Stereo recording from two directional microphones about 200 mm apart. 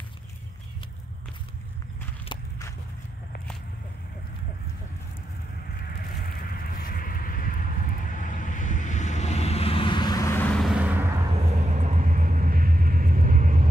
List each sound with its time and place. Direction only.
2.3 s walk: 30° left (ahead or behind)
6.2 s vehicle: 50° left (ahead or behind); by 11.1 s 10° right (ahead or behind)
11.4 s vehicle: 35° right (ahead or behind)